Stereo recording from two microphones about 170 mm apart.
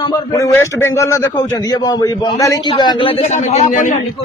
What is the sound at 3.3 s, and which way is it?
Speech, 40° left (ahead or behind).